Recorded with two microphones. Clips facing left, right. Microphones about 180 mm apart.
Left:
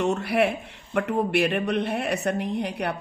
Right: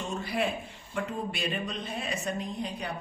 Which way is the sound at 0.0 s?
70° left (ahead or behind).